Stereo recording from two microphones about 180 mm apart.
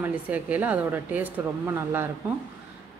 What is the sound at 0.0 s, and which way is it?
Speech, 10° right (ahead or behind).